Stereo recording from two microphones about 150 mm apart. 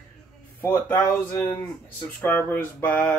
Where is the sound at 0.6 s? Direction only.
15° left (ahead or behind).